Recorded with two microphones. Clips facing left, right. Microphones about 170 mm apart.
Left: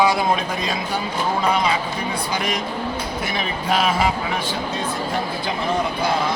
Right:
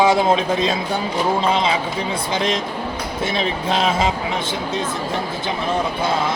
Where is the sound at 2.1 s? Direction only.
25° right (ahead or behind).